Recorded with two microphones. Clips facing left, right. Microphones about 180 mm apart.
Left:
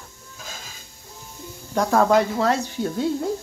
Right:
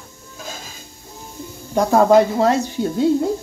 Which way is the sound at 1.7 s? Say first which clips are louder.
Right 5 dB; 20° right (ahead or behind).